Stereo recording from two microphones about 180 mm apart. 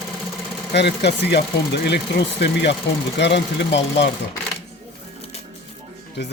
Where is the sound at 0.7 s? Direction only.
70° left (ahead or behind).